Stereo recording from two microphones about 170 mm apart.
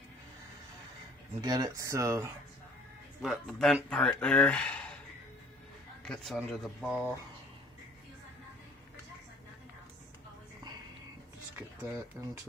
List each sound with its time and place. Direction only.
1.4 s speech: 20° right (ahead or behind)
3.2 s speech: centre (ahead or behind)
6.1 s speech: centre (ahead or behind)
11.5 s speech: 10° right (ahead or behind)